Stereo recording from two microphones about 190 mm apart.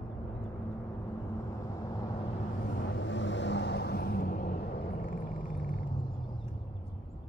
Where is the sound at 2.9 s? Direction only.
70° left (ahead or behind); by 5.2 s 55° left (ahead or behind).